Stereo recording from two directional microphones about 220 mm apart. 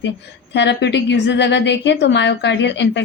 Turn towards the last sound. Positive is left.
turn(degrees=55)  # may be behind; listen again after turning